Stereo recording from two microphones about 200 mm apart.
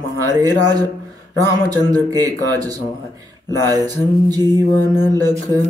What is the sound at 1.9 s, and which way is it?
Speech, 20° right (ahead or behind).